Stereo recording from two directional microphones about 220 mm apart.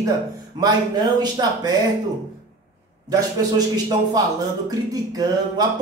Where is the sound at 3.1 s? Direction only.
15° right (ahead or behind).